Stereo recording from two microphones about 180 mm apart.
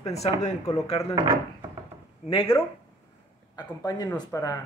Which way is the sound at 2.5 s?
15° left (ahead or behind).